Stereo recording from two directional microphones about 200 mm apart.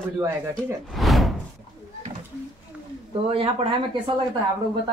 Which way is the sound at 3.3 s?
25° right (ahead or behind).